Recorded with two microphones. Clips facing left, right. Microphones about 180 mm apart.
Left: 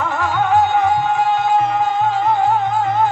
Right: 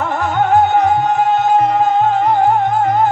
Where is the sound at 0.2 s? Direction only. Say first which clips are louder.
Right 3 dB; 45° right (ahead or behind).